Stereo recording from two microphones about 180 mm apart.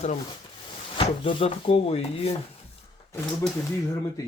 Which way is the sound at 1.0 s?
30° left (ahead or behind).